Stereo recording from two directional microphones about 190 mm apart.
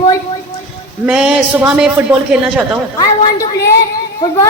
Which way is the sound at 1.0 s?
5° right (ahead or behind).